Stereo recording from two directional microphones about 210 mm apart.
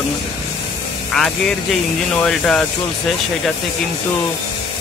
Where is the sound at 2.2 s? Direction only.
5° left (ahead or behind).